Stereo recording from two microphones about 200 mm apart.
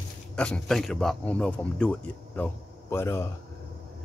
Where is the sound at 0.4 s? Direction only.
5° left (ahead or behind).